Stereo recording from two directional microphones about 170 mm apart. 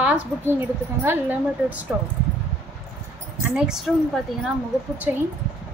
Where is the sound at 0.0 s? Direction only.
10° right (ahead or behind).